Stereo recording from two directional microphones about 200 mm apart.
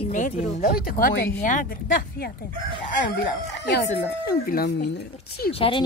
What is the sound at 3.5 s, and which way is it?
Speech, 60° left (ahead or behind).